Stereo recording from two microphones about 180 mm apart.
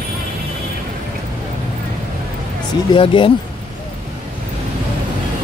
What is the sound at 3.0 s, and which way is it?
Speech, 30° left (ahead or behind).